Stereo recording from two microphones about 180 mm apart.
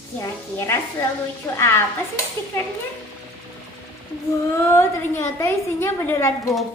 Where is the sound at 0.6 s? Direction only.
15° left (ahead or behind).